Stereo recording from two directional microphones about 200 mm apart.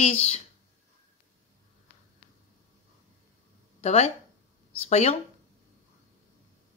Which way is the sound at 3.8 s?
35° left (ahead or behind).